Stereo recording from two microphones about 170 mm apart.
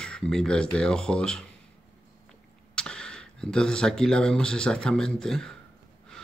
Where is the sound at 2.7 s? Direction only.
5° left (ahead or behind).